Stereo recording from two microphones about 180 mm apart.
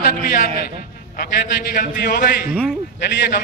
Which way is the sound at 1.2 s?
45° left (ahead or behind).